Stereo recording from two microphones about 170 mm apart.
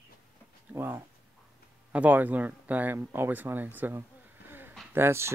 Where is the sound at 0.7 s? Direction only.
10° right (ahead or behind).